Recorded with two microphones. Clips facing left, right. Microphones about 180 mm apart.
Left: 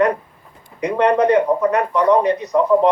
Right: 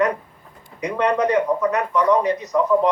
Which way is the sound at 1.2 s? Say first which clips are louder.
Left 4 dB; 60° left (ahead or behind).